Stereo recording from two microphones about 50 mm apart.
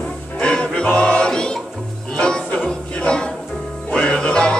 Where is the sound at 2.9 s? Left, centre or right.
Centre.